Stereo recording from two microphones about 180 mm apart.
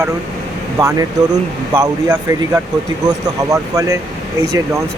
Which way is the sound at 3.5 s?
15° right (ahead or behind).